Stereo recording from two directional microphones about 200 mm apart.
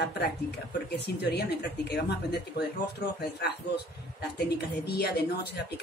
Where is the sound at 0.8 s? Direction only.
55° left (ahead or behind).